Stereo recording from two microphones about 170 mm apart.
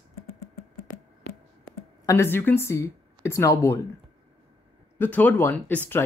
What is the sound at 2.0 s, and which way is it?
Speech, 15° left (ahead or behind).